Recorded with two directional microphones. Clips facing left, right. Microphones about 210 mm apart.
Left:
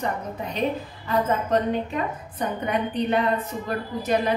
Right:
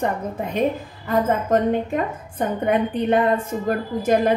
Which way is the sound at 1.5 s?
50° right (ahead or behind).